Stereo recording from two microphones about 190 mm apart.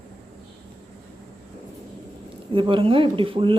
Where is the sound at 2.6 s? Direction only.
25° right (ahead or behind).